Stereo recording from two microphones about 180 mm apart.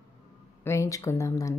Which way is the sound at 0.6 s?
15° left (ahead or behind).